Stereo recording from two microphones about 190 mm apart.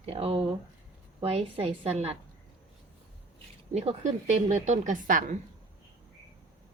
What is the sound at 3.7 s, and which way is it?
A woman's voice, 35° right (ahead or behind).